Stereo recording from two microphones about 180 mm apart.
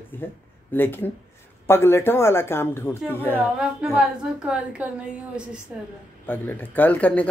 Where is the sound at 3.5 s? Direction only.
5° right (ahead or behind).